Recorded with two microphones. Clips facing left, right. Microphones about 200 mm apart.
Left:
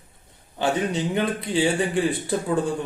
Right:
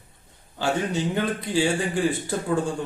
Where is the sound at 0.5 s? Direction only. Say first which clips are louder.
Left 1 dB; 20° left (ahead or behind).